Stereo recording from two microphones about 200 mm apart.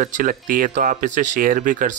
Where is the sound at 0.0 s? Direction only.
40° right (ahead or behind).